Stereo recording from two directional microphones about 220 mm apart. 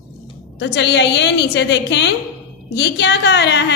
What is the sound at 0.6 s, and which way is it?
A woman's voice, 50° left (ahead or behind).